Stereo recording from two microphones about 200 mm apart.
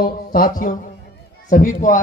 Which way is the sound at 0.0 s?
45° left (ahead or behind).